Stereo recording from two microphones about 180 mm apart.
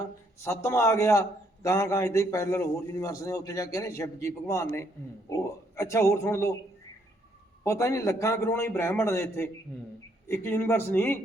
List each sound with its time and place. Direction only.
0.4 s a man's voice: 15° left (ahead or behind)
7.6 s a man's voice: 15° left (ahead or behind)